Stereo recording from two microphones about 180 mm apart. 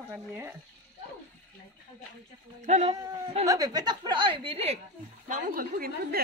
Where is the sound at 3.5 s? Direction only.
20° right (ahead or behind).